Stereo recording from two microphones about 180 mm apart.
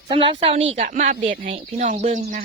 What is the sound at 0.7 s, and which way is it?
Speech, 40° right (ahead or behind).